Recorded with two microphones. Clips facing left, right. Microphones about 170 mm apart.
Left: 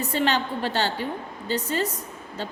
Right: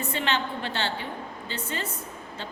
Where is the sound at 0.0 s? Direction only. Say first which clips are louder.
Left 4 dB; 40° left (ahead or behind).